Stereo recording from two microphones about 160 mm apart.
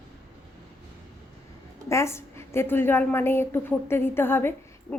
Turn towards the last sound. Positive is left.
turn(degrees=15)  # may be behind; listen again after turning